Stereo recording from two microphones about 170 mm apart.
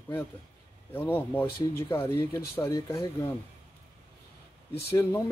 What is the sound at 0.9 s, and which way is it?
Speech, 10° left (ahead or behind).